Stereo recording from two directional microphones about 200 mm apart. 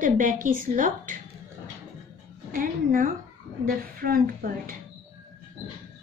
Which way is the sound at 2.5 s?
45° right (ahead or behind).